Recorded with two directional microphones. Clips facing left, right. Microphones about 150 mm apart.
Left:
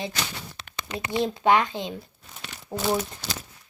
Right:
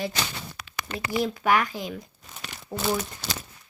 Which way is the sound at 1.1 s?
25° left (ahead or behind).